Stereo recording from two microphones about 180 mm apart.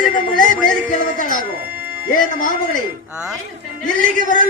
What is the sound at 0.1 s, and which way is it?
A man's voice, 45° left (ahead or behind).